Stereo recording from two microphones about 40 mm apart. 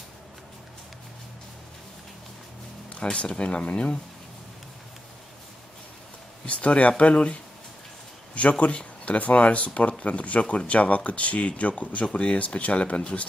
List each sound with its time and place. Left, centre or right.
2.9 s speech: left
6.4 s speech: left
8.4 s speech: left